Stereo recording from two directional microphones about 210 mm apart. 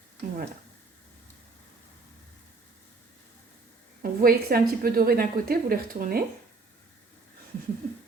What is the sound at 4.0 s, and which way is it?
A woman's voice, 45° right (ahead or behind).